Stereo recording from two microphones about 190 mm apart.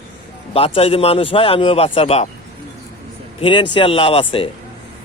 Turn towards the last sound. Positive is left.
turn(degrees=30)  # may be behind; listen again after turning